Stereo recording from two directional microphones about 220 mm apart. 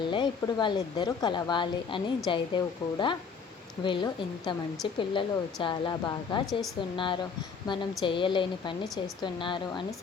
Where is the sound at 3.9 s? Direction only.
20° left (ahead or behind).